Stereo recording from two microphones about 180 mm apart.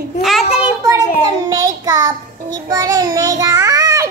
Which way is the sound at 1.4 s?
20° right (ahead or behind).